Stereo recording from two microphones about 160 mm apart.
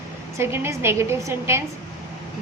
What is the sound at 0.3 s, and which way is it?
A woman's voice, 15° right (ahead or behind).